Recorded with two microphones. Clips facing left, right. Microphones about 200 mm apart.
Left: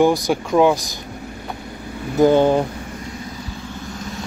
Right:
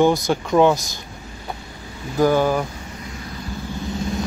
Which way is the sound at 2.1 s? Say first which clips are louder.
Left 4 dB; 20° left (ahead or behind).